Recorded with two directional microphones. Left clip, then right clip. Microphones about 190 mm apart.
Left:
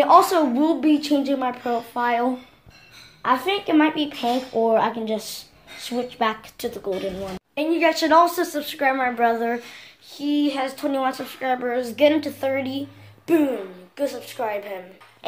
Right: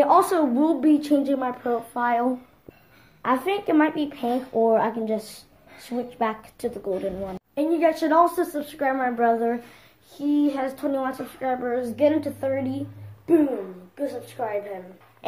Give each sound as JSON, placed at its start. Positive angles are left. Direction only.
{"t": 0.0, "sound": "a woman's voice", "side_deg": -10}
{"t": 13.3, "sound": "a woman's voice", "side_deg": 30}